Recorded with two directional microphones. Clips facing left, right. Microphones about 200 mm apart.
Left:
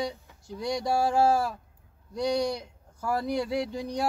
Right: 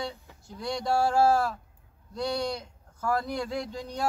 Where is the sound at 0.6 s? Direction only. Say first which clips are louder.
Even; 15° left (ahead or behind).